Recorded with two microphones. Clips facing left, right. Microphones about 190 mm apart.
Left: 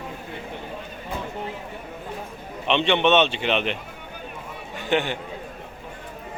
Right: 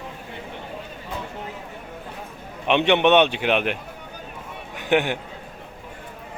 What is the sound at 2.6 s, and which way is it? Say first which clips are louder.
A man's voice: right 2 dB; 10° right (ahead or behind).